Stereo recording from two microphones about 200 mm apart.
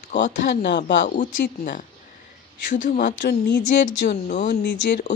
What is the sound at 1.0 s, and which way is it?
Speech, 40° left (ahead or behind).